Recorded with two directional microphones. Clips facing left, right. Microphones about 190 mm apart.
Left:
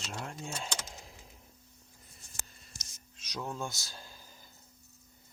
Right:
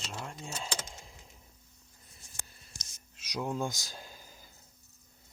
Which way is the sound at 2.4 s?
Centre (ahead or behind).